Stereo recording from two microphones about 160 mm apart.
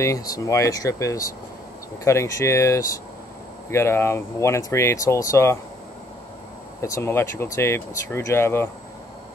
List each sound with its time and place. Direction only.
0.0 s speech: 20° left (ahead or behind)
6.8 s speech: 15° left (ahead or behind)